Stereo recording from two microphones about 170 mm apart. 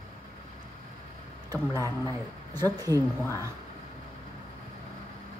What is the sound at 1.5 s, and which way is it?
Speech, 20° right (ahead or behind).